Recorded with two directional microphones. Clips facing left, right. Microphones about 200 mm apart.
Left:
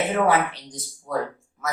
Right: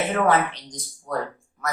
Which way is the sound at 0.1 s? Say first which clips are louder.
Even; 10° left (ahead or behind).